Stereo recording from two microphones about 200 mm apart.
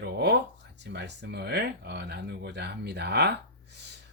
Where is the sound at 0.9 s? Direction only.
55° right (ahead or behind).